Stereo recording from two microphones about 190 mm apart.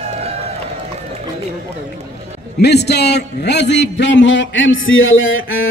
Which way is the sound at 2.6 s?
60° left (ahead or behind).